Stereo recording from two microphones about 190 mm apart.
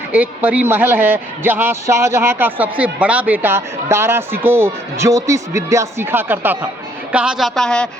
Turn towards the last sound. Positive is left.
turn(degrees=5)  # may be behind; listen again after turning